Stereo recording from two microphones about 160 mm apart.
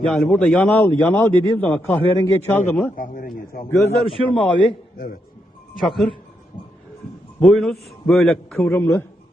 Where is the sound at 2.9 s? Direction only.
60° left (ahead or behind).